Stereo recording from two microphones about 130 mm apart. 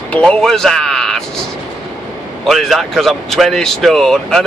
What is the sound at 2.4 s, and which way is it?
Speech, centre (ahead or behind).